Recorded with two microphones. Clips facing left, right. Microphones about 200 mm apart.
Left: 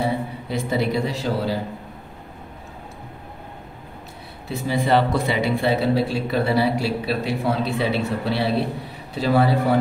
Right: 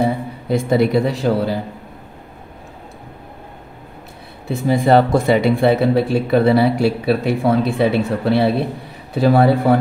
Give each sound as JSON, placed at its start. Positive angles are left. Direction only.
{"t": 0.5, "sound": "speech", "side_deg": -55}
{"t": 4.5, "sound": "speech", "side_deg": -50}